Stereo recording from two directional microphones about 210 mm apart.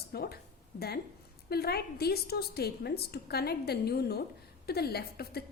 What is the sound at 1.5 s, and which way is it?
A woman's voice, 50° left (ahead or behind).